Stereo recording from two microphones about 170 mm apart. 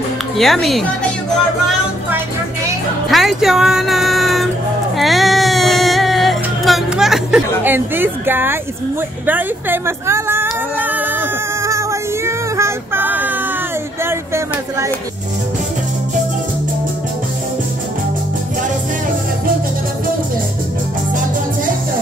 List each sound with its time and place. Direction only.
0.4 s speech: centre (ahead or behind)
3.1 s music: centre (ahead or behind)
9.2 s a sound: 10° right (ahead or behind)